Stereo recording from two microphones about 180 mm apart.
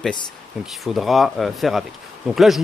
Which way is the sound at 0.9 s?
Centre (ahead or behind).